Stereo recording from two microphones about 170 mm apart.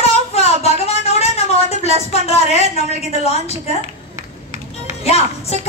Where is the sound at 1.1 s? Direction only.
40° left (ahead or behind).